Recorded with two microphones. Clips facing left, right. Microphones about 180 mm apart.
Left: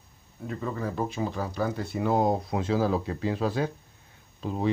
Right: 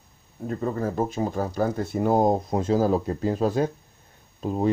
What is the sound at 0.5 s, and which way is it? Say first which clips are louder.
Speech: right 5 dB; 40° right (ahead or behind).